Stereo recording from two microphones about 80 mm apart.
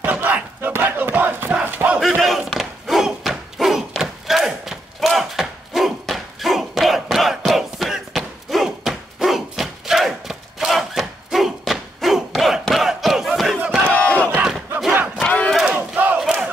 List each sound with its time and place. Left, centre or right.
0.0 s battle cry: right
2.0 s battle cry: centre
13.8 s battle cry: centre
15.6 s crowd: centre
16.2 s crowd: centre